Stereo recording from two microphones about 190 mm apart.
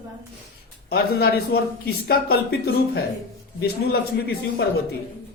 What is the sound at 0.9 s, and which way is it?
Speech, 55° left (ahead or behind).